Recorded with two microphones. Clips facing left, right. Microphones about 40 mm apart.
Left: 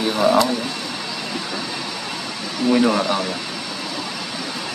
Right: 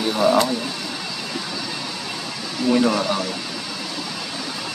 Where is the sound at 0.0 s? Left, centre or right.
Centre.